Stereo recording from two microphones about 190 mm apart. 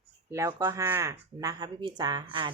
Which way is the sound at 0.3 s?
15° right (ahead or behind).